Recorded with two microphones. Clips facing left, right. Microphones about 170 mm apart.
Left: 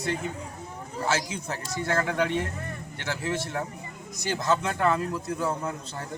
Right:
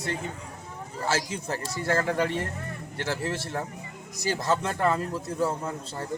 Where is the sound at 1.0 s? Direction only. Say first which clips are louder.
Even; 30° right (ahead or behind).